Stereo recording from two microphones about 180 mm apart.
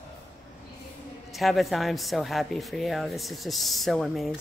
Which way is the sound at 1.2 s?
Centre (ahead or behind).